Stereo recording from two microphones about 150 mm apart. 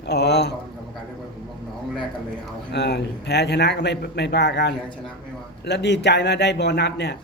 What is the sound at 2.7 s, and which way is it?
A man's voice, 90° left.